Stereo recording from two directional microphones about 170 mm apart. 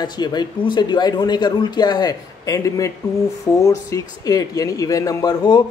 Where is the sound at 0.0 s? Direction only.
25° left (ahead or behind).